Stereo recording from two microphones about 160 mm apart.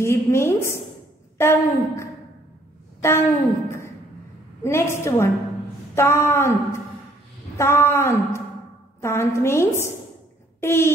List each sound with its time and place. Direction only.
0.0 s a woman's voice: 15° left (ahead or behind)
7.5 s a woman's voice: 15° left (ahead or behind)